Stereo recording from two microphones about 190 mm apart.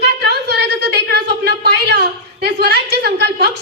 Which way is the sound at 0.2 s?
60° right (ahead or behind).